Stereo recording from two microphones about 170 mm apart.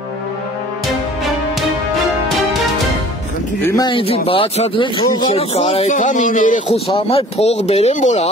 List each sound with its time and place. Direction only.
3.6 s speech: 20° left (ahead or behind)
5.9 s speech: 50° left (ahead or behind)
6.7 s speech: 35° left (ahead or behind)